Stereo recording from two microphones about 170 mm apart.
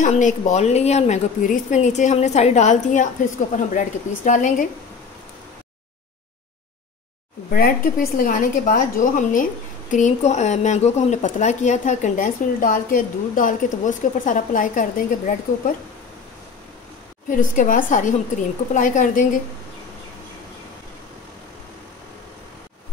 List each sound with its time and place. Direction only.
0.0 s a woman's voice: 45° left (ahead or behind)
7.5 s a woman's voice: 60° left (ahead or behind)
17.3 s a woman's voice: 50° left (ahead or behind)